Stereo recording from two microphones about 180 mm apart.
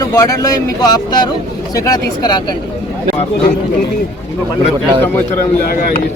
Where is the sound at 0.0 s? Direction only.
15° left (ahead or behind).